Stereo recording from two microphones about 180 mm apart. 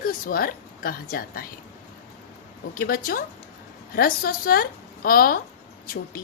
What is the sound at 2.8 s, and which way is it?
A woman's voice, 55° left (ahead or behind).